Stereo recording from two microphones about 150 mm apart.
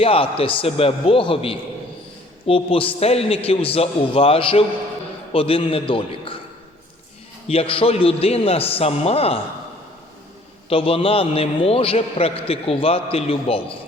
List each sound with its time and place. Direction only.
0.0 s a man's voice: 40° left (ahead or behind)
7.4 s a man's voice: 40° left (ahead or behind)
10.7 s a man's voice: 40° left (ahead or behind)